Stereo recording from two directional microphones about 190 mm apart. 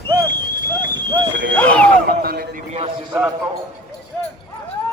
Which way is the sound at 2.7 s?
35° right (ahead or behind).